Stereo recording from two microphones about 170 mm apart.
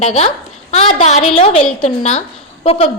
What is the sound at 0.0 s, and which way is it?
A woman's voice, 40° left (ahead or behind).